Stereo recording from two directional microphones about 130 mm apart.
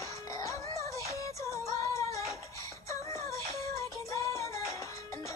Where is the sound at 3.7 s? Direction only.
25° left (ahead or behind).